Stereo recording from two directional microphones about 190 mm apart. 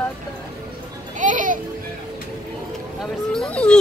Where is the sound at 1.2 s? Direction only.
40° right (ahead or behind).